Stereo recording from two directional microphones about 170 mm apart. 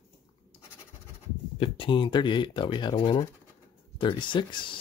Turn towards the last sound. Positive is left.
turn(degrees=30)  # may be behind; listen again after turning